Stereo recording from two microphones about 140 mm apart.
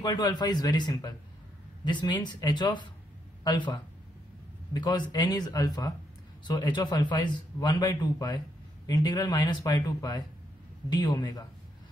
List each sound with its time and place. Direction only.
0.0 s a man's voice: 30° left (ahead or behind)